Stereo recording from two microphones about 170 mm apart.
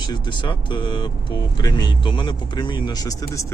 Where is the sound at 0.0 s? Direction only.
30° left (ahead or behind).